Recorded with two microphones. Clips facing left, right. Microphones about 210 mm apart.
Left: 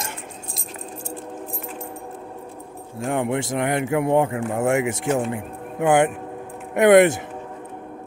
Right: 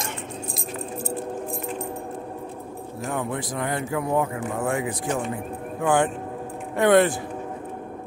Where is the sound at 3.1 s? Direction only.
25° left (ahead or behind).